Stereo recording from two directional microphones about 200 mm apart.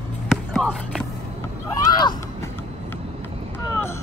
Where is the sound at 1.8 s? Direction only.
15° left (ahead or behind).